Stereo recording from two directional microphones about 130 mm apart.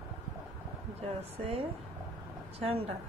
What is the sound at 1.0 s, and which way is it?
Speech, 55° right (ahead or behind).